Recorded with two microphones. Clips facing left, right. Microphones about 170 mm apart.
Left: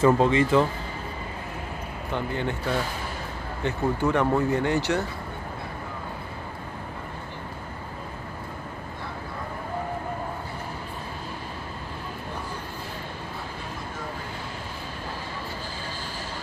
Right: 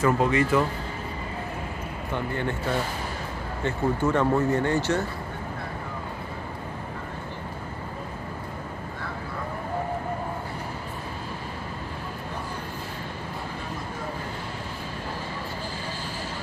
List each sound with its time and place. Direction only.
0.0 s speech: 25° left (ahead or behind)
3.6 s speech: 15° left (ahead or behind)